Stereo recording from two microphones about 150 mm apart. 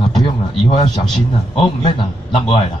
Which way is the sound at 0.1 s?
35° left (ahead or behind).